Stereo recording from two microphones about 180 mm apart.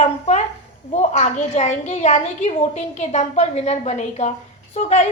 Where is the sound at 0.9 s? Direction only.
40° left (ahead or behind).